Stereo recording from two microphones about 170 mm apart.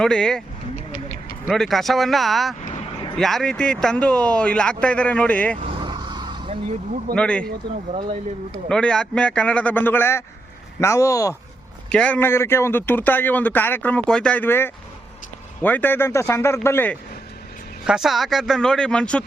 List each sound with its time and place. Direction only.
0.0 s speech: 5° left (ahead or behind)
1.5 s speech: centre (ahead or behind)
2.6 s vehicle: 40° left (ahead or behind)
3.2 s speech: centre (ahead or behind)
5.5 s vehicle: 30° right (ahead or behind)
7.2 s speech: 5° left (ahead or behind)
8.7 s speech: 5° left (ahead or behind)
11.9 s speech: 5° left (ahead or behind)
17.8 s speech: 5° right (ahead or behind)